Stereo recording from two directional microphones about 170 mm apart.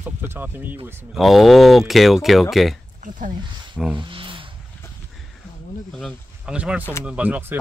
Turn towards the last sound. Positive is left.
turn(degrees=-10)  # may be behind; listen again after turning